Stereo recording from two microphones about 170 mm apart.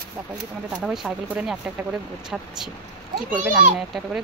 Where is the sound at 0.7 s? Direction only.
5° right (ahead or behind).